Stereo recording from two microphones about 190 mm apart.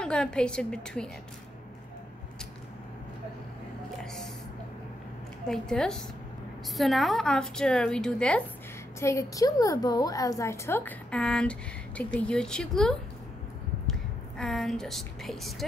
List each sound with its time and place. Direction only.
0.0 s a woman's voice: 5° left (ahead or behind)
4.0 s a sound: 5° left (ahead or behind)
5.5 s a woman's voice: 5° left (ahead or behind)
9.0 s a woman's voice: 15° left (ahead or behind)
14.4 s a woman's voice: centre (ahead or behind)